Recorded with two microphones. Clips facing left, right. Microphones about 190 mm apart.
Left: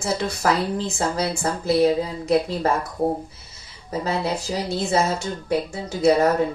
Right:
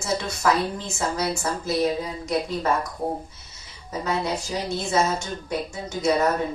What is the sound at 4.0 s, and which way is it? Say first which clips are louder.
A woman's voice: left 1 dB; 35° left (ahead or behind).